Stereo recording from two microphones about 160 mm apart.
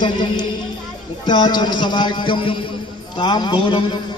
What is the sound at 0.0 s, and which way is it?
Music, 30° left (ahead or behind).